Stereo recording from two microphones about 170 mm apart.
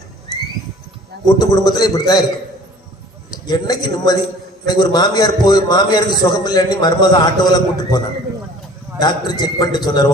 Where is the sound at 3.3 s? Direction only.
25° left (ahead or behind).